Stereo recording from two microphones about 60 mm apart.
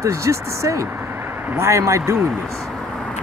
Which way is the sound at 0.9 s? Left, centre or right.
Right.